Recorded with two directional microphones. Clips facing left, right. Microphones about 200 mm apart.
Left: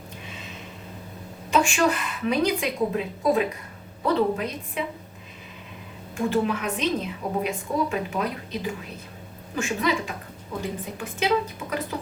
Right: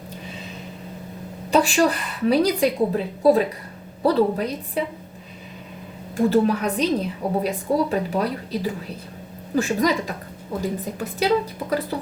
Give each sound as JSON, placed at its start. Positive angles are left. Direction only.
{"t": 1.5, "sound": "a woman's voice", "side_deg": -35}
{"t": 6.1, "sound": "a woman's voice", "side_deg": -40}